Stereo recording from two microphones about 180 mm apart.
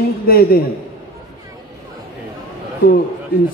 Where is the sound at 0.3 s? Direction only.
55° left (ahead or behind).